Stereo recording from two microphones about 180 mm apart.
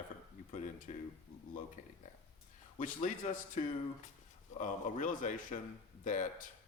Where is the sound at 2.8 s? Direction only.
45° left (ahead or behind).